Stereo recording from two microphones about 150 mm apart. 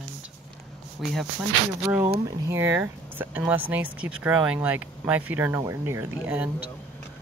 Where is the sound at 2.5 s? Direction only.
15° right (ahead or behind).